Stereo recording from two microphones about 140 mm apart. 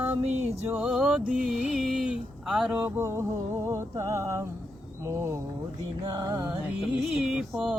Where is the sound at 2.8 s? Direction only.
20° right (ahead or behind).